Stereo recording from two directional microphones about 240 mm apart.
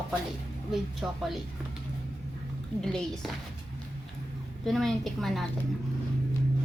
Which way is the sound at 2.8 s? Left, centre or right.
Centre.